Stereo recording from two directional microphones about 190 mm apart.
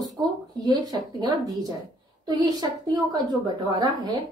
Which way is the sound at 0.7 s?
20° right (ahead or behind).